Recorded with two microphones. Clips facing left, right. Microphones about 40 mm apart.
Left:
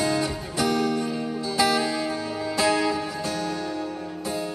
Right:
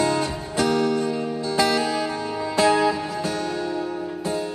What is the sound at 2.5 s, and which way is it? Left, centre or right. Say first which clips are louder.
Music: right 4 dB; right.